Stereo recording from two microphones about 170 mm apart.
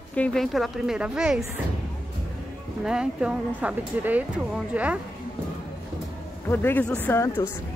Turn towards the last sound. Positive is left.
turn(degrees=15)  # may be behind; listen again after turning